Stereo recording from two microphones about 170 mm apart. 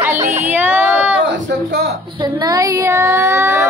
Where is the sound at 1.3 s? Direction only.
90° right.